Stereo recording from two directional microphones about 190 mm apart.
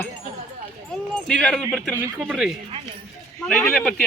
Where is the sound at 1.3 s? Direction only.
Centre (ahead or behind).